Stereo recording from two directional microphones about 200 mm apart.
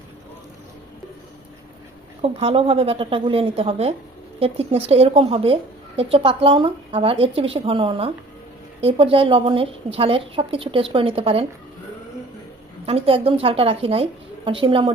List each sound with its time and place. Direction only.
2.2 s a woman's voice: 30° right (ahead or behind)
12.8 s a woman's voice: 30° right (ahead or behind)